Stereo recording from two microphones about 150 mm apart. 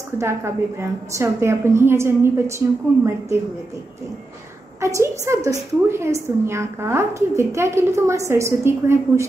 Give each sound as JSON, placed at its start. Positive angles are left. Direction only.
{"t": 0.2, "sound": "a woman's voice", "side_deg": -20}
{"t": 4.7, "sound": "a woman's voice", "side_deg": -20}